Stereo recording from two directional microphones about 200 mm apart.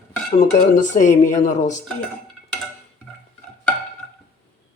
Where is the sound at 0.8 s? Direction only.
40° left (ahead or behind).